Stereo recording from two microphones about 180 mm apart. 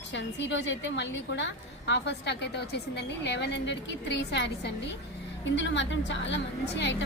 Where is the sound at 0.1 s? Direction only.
80° left.